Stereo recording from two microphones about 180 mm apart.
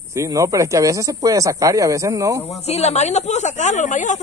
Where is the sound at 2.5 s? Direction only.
35° left (ahead or behind).